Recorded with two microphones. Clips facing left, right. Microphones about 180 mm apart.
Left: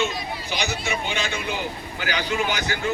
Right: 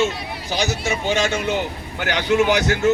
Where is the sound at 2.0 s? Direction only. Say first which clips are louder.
Right 7 dB; 65° right (ahead or behind).